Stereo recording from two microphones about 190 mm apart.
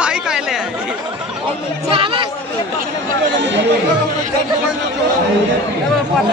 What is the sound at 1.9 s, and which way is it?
Speech, 30° right (ahead or behind).